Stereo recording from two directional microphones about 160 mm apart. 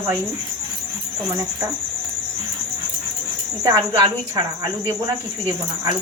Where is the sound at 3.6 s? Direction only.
25° right (ahead or behind).